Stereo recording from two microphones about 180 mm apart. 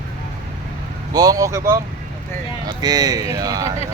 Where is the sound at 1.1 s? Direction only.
20° right (ahead or behind).